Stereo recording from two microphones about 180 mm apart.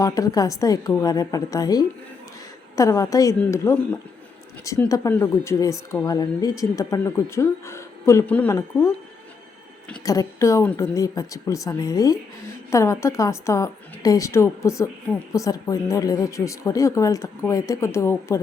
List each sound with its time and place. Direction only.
0.0 s a woman's voice: 20° left (ahead or behind)
10.0 s speech: 20° left (ahead or behind)